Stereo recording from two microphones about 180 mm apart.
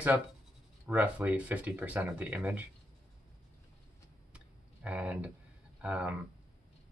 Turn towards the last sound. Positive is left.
turn(degrees=-5)  # may be behind; listen again after turning